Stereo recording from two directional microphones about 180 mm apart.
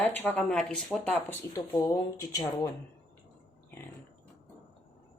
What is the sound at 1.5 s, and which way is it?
Speech, 20° left (ahead or behind).